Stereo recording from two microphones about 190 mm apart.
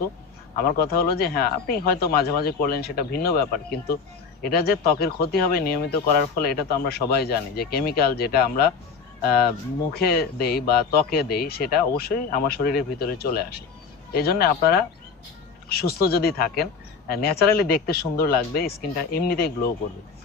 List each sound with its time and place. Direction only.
0.6 s speech: 55° left (ahead or behind)
9.9 s speech: 55° left (ahead or behind)